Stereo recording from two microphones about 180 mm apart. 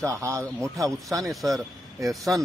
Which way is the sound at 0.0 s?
15° right (ahead or behind).